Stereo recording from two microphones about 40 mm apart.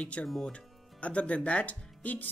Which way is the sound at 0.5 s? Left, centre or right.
Left.